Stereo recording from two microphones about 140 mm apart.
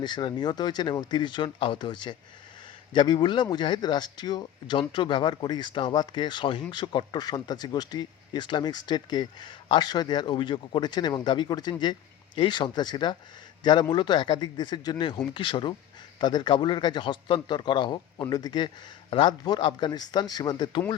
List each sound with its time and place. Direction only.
0.0 s speech: 30° left (ahead or behind)